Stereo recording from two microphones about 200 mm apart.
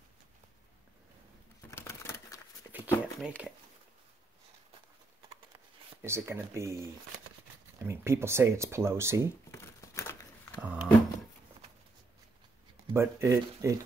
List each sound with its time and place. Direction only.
1.7 s typewriter: 15° left (ahead or behind)
3.2 s speech: 5° right (ahead or behind)
6.0 s speech: 10° right (ahead or behind)
9.5 s crumpling: 15° left (ahead or behind)
10.6 s a sound: 5° right (ahead or behind)
12.9 s speech: 15° right (ahead or behind)